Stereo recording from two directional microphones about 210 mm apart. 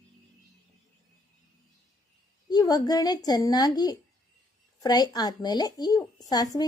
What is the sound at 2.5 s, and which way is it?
A woman's voice, 20° left (ahead or behind).